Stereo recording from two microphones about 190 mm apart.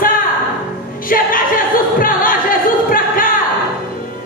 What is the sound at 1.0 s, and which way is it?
Music, 45° left (ahead or behind).